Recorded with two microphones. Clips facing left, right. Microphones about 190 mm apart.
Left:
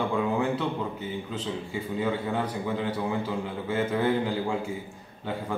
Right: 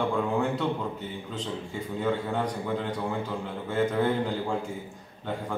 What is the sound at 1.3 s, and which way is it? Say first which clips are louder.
A man's voice: right 1 dB; 5° left (ahead or behind).